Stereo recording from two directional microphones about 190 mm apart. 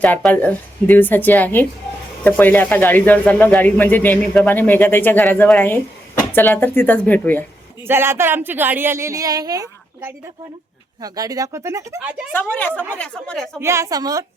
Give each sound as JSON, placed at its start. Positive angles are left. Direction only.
{"t": 0.0, "sound": "speech", "side_deg": 10}
{"t": 7.9, "sound": "speech", "side_deg": -10}
{"t": 12.5, "sound": "speech", "side_deg": 10}
{"t": 13.6, "sound": "speech", "side_deg": -15}